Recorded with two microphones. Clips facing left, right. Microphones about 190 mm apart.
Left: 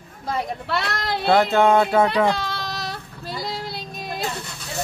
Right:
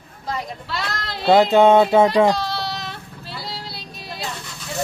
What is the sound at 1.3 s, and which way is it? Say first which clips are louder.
Speech: right 4 dB; 15° right (ahead or behind).